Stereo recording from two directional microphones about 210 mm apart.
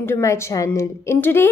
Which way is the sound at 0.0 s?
15° left (ahead or behind).